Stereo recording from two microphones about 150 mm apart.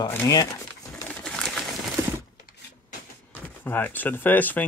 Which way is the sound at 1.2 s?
5° left (ahead or behind).